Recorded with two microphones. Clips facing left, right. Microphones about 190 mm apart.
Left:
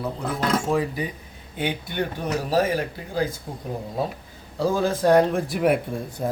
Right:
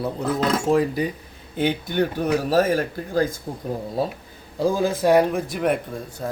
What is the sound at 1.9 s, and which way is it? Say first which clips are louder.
Speech: right 5 dB; 45° right (ahead or behind).